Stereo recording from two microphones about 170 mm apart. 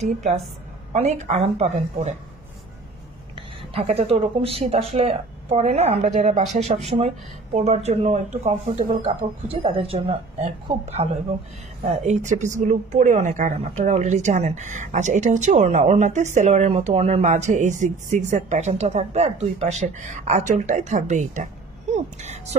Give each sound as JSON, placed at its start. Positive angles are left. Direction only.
{"t": 0.9, "sound": "speech", "side_deg": -40}
{"t": 3.3, "sound": "a woman's voice", "side_deg": -35}